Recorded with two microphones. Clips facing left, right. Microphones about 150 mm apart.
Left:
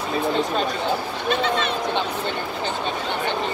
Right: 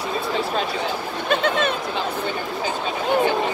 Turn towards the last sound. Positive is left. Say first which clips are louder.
# right 2 dB
turn(degrees=-50)  # may be behind; listen again after turning